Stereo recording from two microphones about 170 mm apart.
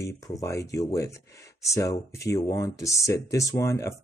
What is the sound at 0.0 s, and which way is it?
Speech, 20° left (ahead or behind).